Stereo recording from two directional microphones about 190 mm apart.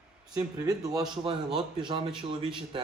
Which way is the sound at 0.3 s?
20° right (ahead or behind).